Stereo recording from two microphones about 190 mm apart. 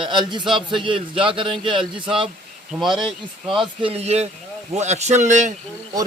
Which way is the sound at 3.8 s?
30° right (ahead or behind).